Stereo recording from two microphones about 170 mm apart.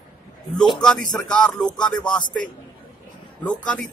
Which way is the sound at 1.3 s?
5° left (ahead or behind).